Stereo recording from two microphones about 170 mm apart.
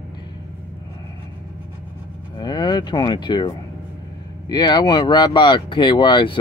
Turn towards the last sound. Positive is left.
turn(degrees=30)  # may be behind; listen again after turning